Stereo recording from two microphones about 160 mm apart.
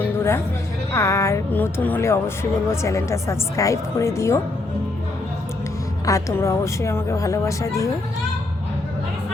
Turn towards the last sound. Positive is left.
turn(degrees=20)  # may be behind; listen again after turning